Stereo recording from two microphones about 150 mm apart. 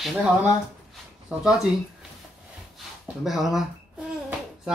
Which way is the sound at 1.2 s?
5° right (ahead or behind).